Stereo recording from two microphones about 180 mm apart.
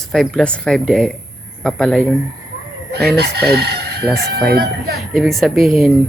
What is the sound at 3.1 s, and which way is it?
Speech, 65° right (ahead or behind).